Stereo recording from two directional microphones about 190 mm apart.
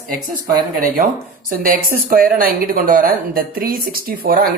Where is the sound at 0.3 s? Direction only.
45° right (ahead or behind).